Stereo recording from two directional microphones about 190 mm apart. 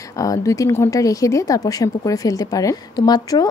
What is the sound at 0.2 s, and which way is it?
Speech, 15° left (ahead or behind).